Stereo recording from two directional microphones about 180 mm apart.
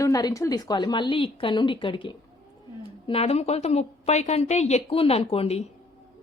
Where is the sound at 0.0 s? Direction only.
20° left (ahead or behind).